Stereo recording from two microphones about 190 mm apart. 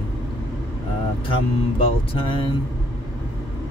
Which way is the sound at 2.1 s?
25° left (ahead or behind).